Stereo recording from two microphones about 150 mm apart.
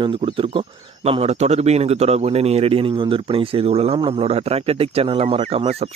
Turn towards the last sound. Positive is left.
turn(degrees=-45)  # may be behind; listen again after turning